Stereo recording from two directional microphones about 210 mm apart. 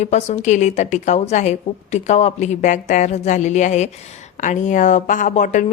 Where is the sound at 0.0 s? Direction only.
35° left (ahead or behind).